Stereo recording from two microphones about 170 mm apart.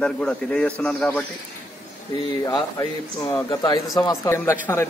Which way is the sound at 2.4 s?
20° left (ahead or behind).